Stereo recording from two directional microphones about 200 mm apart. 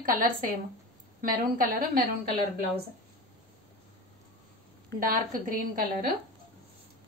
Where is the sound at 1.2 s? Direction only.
45° right (ahead or behind).